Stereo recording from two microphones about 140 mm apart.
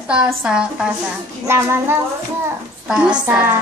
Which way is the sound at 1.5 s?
15° right (ahead or behind).